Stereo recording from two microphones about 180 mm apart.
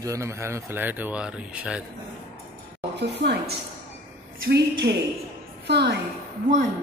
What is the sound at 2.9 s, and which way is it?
Speech, 70° right (ahead or behind).